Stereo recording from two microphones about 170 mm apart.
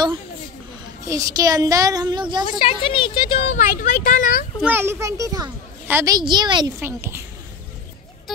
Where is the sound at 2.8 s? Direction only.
30° left (ahead or behind).